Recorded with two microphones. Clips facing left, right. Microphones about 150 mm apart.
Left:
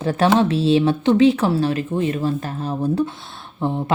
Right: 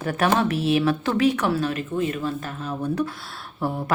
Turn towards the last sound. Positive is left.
turn(degrees=20)  # may be behind; listen again after turning